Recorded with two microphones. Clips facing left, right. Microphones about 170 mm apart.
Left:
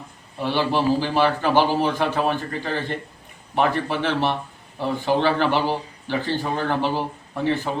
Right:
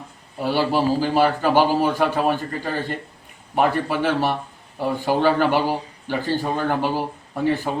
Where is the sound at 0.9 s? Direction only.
45° right (ahead or behind).